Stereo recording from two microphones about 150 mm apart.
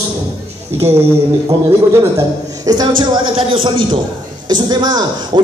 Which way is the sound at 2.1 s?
25° right (ahead or behind).